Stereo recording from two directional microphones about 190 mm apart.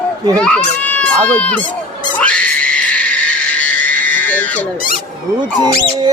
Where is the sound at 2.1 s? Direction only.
5° left (ahead or behind).